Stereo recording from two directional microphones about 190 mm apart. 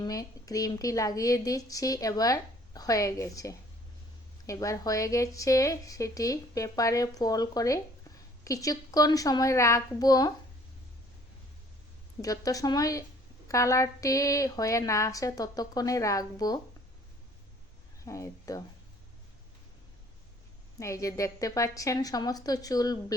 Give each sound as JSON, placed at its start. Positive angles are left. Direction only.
{"t": 0.0, "sound": "a woman's voice", "side_deg": 20}
{"t": 12.2, "sound": "a woman's voice", "side_deg": 20}
{"t": 18.0, "sound": "speech", "side_deg": 15}
{"t": 20.7, "sound": "a woman's voice", "side_deg": 15}